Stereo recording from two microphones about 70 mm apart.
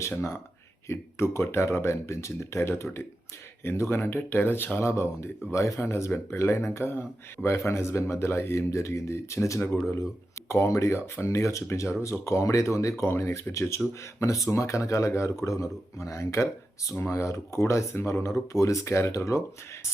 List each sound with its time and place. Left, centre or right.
0.9 s speech: left
5.8 s speech: left